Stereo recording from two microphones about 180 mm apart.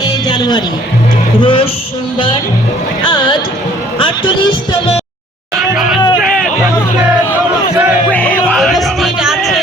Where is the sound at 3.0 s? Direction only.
25° left (ahead or behind).